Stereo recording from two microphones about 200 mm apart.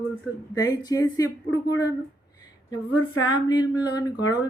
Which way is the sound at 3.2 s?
20° left (ahead or behind).